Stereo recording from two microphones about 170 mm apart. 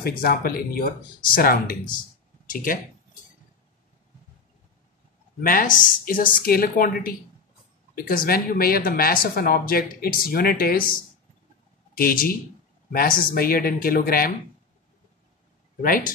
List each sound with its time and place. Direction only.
0.0 s speech: 60° left (ahead or behind)
5.4 s speech: 55° left (ahead or behind)
12.0 s speech: 60° left (ahead or behind)